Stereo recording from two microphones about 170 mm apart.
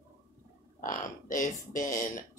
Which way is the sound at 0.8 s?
50° left (ahead or behind).